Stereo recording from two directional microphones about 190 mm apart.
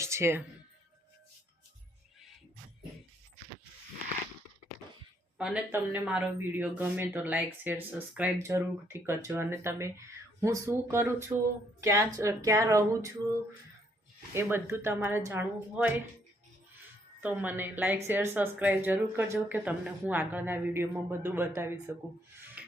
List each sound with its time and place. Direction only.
0.0 s music: 15° right (ahead or behind)
5.4 s speech: 5° right (ahead or behind)
14.3 s speech: 15° right (ahead or behind)
17.2 s speech: 10° right (ahead or behind)
22.6 s music: 5° right (ahead or behind)